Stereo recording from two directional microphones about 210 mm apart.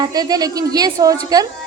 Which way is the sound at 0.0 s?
20° right (ahead or behind).